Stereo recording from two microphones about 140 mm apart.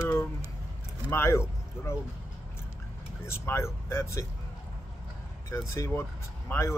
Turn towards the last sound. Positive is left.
turn(degrees=20)  # may be behind; listen again after turning